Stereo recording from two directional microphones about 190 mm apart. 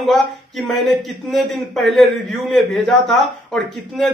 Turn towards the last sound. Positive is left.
turn(degrees=0)  # may be behind; listen again after turning